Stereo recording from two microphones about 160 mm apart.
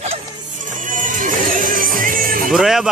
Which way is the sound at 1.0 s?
55° right (ahead or behind).